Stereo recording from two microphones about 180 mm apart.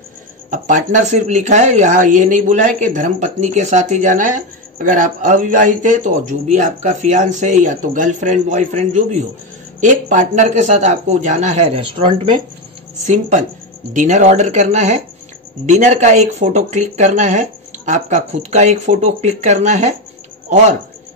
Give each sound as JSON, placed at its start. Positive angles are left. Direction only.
{"t": 0.5, "sound": "speech", "side_deg": -45}
{"t": 13.0, "sound": "speech", "side_deg": -40}